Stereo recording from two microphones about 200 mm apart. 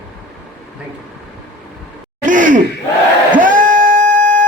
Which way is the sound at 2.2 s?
40° right (ahead or behind).